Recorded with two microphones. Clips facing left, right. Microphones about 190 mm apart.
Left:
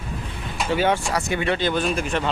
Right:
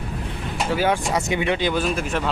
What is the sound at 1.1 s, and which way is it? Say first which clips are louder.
Speech: right 1 dB; 20° right (ahead or behind).